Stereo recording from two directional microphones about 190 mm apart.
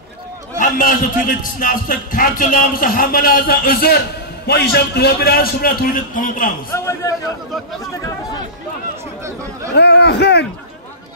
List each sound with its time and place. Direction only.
0.6 s a man's voice: 45° left (ahead or behind)
6.7 s a man's voice: 15° left (ahead or behind)
9.8 s a man's voice: 60° left (ahead or behind)